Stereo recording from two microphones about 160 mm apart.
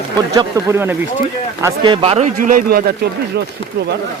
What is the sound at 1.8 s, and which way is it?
Speech, 30° right (ahead or behind).